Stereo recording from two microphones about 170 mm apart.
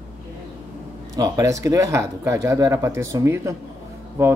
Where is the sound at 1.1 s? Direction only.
20° right (ahead or behind).